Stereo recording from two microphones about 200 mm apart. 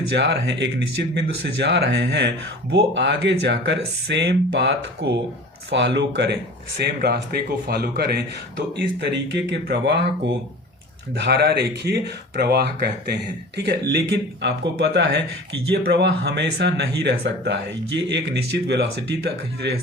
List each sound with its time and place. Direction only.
0.2 s speech: 60° right (ahead or behind)
11.1 s speech: 55° right (ahead or behind)